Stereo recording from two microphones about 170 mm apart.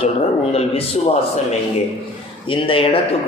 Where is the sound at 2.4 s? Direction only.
30° left (ahead or behind).